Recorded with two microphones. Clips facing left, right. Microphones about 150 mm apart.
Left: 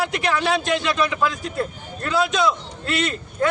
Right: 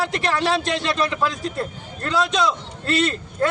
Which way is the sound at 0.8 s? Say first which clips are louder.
Left 1 dB; 30° right (ahead or behind).